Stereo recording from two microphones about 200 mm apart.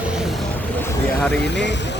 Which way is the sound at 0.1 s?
Centre (ahead or behind).